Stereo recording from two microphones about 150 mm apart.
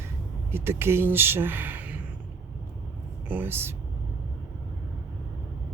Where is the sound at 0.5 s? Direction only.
15° right (ahead or behind).